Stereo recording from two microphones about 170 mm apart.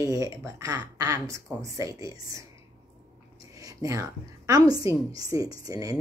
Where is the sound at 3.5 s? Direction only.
20° right (ahead or behind).